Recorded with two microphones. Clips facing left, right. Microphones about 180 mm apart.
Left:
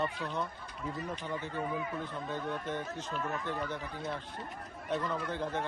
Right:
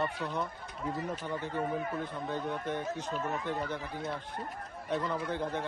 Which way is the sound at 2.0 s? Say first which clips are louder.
Right 2 dB; 15° right (ahead or behind).